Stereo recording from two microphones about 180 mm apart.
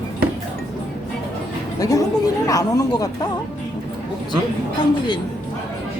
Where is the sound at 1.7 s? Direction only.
20° left (ahead or behind).